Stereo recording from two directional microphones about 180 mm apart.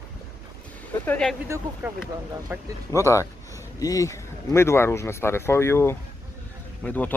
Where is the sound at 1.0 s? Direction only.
5° left (ahead or behind).